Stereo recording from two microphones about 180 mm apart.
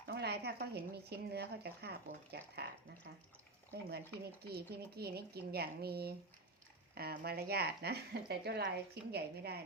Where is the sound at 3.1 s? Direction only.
85° right.